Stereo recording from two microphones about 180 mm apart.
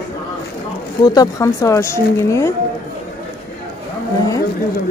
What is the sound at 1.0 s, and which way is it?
Speech, 20° left (ahead or behind).